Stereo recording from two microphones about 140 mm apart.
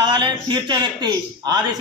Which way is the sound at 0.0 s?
35° right (ahead or behind).